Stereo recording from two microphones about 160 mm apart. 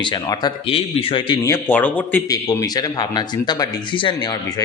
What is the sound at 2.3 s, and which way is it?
Speech, 20° left (ahead or behind).